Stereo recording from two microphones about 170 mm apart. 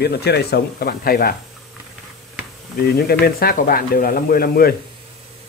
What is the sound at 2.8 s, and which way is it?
Speech, 65° left (ahead or behind).